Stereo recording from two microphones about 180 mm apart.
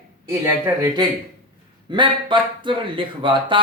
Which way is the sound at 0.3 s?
15° right (ahead or behind).